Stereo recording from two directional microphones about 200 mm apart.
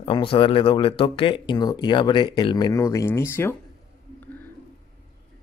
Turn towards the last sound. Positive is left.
turn(degrees=15)  # may be behind; listen again after turning